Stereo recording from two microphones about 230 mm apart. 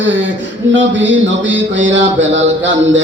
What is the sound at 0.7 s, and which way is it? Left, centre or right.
Singing, right.